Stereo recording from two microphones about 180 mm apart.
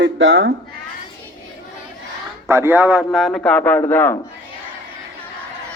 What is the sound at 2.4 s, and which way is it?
A man's voice, 15° right (ahead or behind).